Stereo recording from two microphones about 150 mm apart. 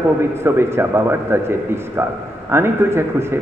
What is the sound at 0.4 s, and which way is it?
A man's voice, 15° right (ahead or behind).